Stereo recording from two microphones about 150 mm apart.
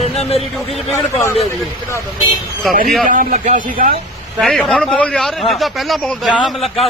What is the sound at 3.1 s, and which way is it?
Speech, 60° right (ahead or behind).